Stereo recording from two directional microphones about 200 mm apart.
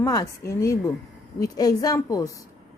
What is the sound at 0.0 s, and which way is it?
A woman's voice, 15° left (ahead or behind).